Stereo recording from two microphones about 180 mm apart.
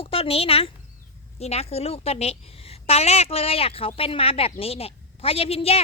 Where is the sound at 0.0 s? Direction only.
30° left (ahead or behind).